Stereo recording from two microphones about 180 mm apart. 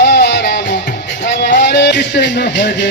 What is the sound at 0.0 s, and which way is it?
Music, 65° left (ahead or behind).